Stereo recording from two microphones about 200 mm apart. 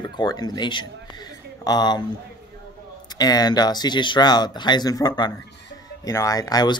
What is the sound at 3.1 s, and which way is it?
Speech, 20° left (ahead or behind).